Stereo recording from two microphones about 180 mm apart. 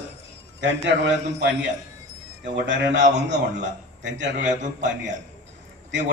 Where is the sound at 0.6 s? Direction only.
90° right.